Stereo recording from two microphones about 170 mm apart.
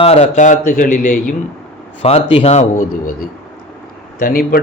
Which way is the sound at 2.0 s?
35° left (ahead or behind).